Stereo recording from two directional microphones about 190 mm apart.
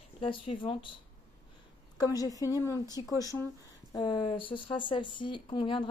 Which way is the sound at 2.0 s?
20° left (ahead or behind).